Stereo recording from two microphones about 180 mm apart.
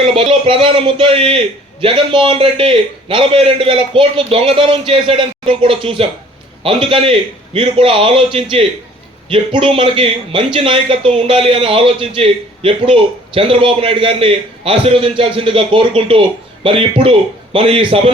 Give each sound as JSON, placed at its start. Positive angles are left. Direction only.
{"t": 0.1, "sound": "a man's voice", "side_deg": -30}